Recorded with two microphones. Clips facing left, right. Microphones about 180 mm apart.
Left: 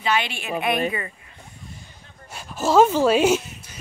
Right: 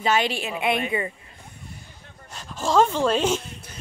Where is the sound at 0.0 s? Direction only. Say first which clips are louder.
Right 2 dB; 40° right (ahead or behind).